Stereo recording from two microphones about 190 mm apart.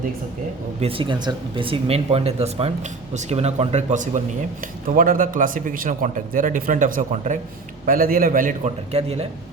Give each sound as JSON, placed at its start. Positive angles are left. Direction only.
{"t": 0.8, "sound": "a man's voice", "side_deg": -30}